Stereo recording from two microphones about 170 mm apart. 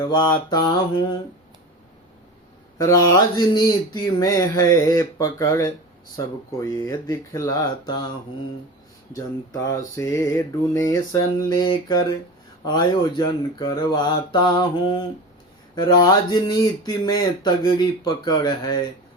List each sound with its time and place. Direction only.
0.0 s speech: 25° left (ahead or behind)
2.7 s speech: 20° left (ahead or behind)
9.1 s speech: 20° left (ahead or behind)